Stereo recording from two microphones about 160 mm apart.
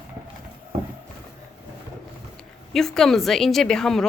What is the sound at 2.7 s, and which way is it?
A woman's voice, centre (ahead or behind).